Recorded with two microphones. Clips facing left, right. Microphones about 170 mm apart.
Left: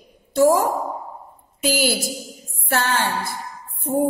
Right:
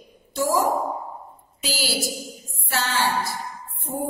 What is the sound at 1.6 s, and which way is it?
A woman's voice, 55° left (ahead or behind).